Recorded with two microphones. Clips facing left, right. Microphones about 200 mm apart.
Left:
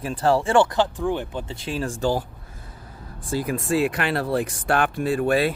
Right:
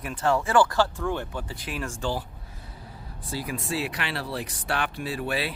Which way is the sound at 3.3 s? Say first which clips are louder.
Left 8 dB; 50° left (ahead or behind).